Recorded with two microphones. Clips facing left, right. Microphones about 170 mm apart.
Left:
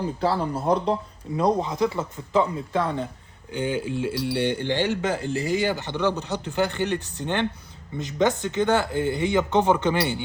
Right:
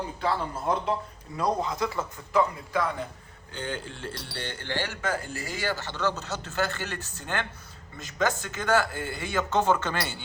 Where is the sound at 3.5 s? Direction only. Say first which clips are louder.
Left 9 dB; 10° left (ahead or behind).